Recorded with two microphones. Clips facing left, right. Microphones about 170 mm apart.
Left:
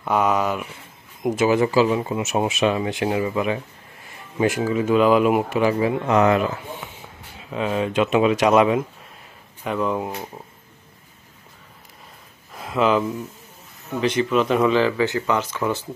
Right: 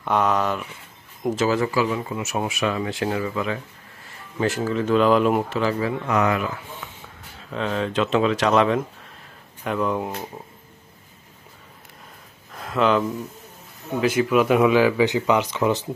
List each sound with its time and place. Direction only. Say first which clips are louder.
0.0 s speech: left 1 dB; 10° left (ahead or behind); by 6.4 s 30° left (ahead or behind)
7.3 s speech: left 2 dB; 10° left (ahead or behind)
12.5 s speech: left 1 dB; 5° left (ahead or behind); by 15.9 s 15° right (ahead or behind)